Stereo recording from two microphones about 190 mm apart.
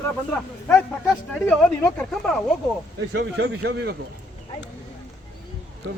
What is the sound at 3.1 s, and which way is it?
Speech, 65° right (ahead or behind).